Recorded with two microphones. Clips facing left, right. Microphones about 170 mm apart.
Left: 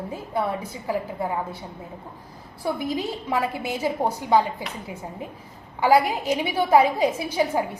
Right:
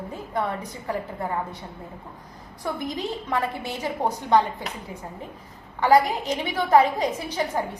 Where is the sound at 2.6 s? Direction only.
10° left (ahead or behind).